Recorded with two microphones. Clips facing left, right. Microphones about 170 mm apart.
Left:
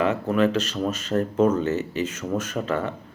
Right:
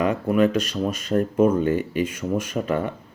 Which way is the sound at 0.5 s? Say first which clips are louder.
Right 1 dB; 10° right (ahead or behind).